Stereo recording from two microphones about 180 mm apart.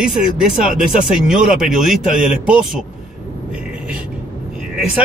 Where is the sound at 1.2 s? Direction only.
Centre (ahead or behind).